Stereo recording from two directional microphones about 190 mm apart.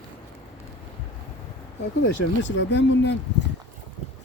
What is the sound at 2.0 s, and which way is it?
Speech, 75° left (ahead or behind).